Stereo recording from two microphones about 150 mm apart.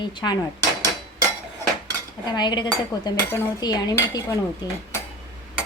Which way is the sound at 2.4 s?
30° left (ahead or behind).